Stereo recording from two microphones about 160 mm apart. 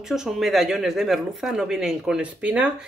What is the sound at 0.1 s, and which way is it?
Speech, centre (ahead or behind).